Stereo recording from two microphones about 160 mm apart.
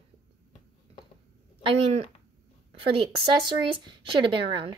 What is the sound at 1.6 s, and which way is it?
Speech, 35° right (ahead or behind).